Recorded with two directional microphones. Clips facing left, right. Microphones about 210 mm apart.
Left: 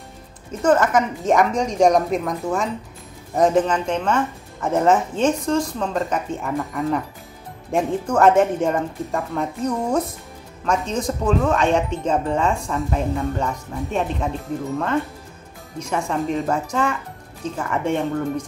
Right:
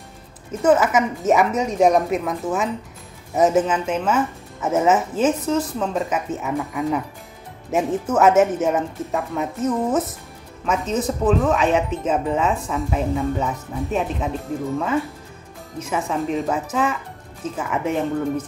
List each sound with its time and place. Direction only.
0.5 s speech: 5° right (ahead or behind)
15.8 s speech: 5° right (ahead or behind)